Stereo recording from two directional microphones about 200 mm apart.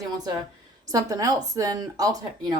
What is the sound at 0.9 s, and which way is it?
A woman's voice, 20° right (ahead or behind).